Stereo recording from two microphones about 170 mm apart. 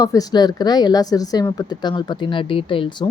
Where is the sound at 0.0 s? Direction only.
20° left (ahead or behind).